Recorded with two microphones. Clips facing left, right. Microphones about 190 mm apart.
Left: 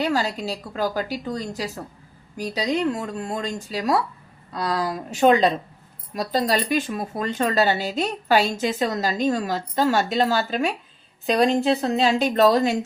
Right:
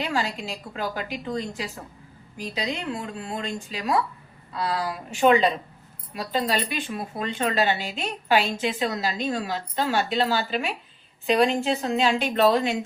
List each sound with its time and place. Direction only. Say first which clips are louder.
0.0 s a woman's voice: left 4 dB; 40° left (ahead or behind)